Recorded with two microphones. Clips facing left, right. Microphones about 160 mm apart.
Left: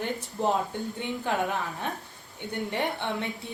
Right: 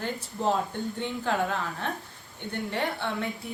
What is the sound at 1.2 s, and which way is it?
A woman's voice, 15° left (ahead or behind).